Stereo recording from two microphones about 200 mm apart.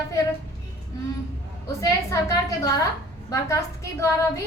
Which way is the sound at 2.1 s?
15° left (ahead or behind).